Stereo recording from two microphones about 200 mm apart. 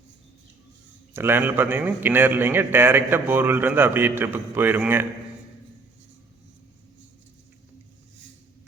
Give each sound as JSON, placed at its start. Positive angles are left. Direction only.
{"t": 1.1, "sound": "a man's voice", "side_deg": -10}